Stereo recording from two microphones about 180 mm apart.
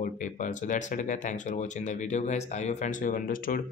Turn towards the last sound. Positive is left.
turn(degrees=50)  # may be behind; listen again after turning